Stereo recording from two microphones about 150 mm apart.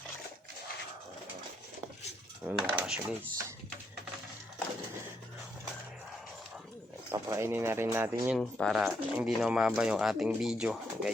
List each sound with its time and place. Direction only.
2.5 s speech: 5° right (ahead or behind)
7.1 s speech: 15° right (ahead or behind)
8.4 s speech: 5° left (ahead or behind)
8.7 s speech: 5° right (ahead or behind)